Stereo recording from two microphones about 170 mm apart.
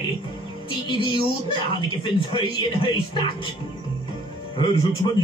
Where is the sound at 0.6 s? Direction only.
30° left (ahead or behind).